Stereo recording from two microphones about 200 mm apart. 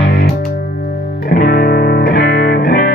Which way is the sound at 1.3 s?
50° left (ahead or behind).